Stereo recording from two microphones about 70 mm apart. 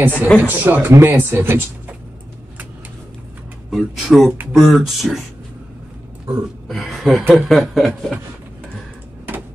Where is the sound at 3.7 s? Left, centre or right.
Centre.